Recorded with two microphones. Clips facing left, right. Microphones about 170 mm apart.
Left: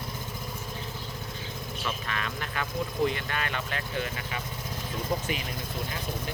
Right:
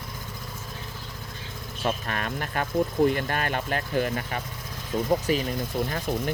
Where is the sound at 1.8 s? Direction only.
45° right (ahead or behind).